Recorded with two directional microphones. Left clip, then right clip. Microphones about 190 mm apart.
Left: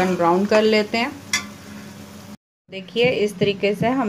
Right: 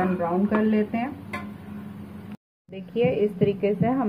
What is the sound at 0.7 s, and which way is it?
Speech, 50° left (ahead or behind).